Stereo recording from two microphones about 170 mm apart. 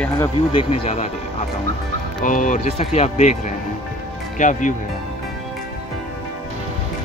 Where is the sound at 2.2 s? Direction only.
50° left (ahead or behind).